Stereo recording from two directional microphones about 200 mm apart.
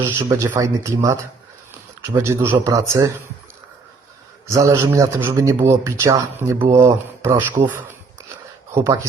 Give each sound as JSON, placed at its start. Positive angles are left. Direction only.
{"t": 0.2, "sound": "a man's voice", "side_deg": -15}
{"t": 4.4, "sound": "a man's voice", "side_deg": -15}